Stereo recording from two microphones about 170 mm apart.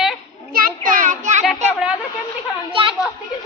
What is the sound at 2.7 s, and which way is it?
Speech, 30° right (ahead or behind).